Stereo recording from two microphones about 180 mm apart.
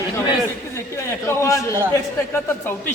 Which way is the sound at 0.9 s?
15° left (ahead or behind).